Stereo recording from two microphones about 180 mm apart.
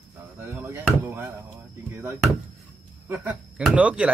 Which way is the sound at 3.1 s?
10° right (ahead or behind).